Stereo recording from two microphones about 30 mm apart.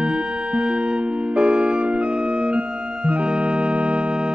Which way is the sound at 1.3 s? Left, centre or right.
Right.